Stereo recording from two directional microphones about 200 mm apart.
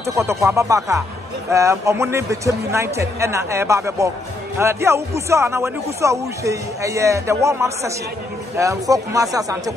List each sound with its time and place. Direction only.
0.0 s speech: 15° right (ahead or behind)